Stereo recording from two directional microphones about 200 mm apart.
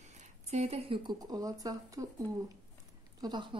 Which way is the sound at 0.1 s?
35° right (ahead or behind).